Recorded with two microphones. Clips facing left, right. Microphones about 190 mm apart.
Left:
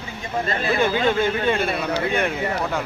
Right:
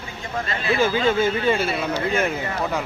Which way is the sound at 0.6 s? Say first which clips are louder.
Right 1 dB; centre (ahead or behind).